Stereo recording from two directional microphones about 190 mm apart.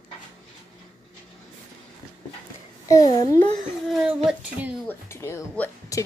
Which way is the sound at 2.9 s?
20° left (ahead or behind).